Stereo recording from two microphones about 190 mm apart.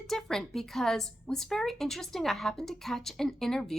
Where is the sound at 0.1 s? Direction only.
Centre (ahead or behind).